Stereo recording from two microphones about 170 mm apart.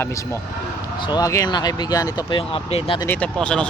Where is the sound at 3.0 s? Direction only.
10° left (ahead or behind).